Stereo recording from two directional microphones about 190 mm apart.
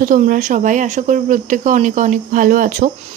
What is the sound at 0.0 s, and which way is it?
Speech, 45° right (ahead or behind).